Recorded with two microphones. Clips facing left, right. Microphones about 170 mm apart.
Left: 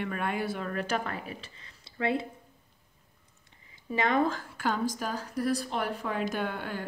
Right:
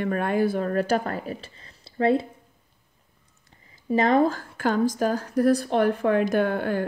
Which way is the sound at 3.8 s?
35° right (ahead or behind).